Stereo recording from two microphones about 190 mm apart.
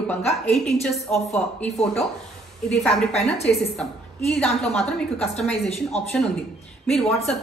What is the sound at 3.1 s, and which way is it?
Speech, 35° left (ahead or behind).